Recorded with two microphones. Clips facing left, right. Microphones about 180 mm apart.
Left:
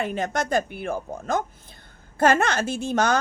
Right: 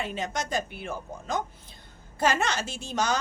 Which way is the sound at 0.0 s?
55° left (ahead or behind).